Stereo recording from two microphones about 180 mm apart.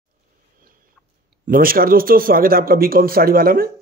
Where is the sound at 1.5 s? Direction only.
55° right (ahead or behind).